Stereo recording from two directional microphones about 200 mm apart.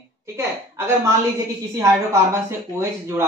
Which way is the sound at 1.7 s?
15° right (ahead or behind).